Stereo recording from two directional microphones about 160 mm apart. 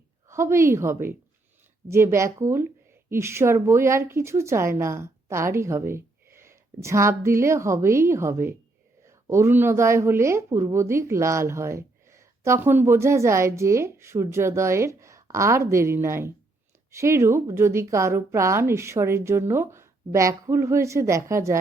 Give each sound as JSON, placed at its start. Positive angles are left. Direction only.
{"t": 0.3, "sound": "speech", "side_deg": -15}